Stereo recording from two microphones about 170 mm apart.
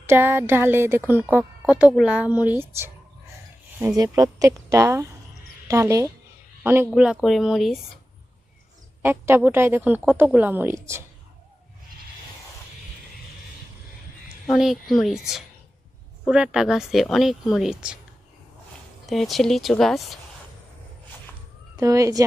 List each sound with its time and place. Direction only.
0.0 s speech: 15° right (ahead or behind)
9.0 s speech: 10° right (ahead or behind)
14.4 s speech: centre (ahead or behind)
16.2 s speech: 5° right (ahead or behind)
19.0 s speech: centre (ahead or behind)
21.8 s speech: 20° right (ahead or behind)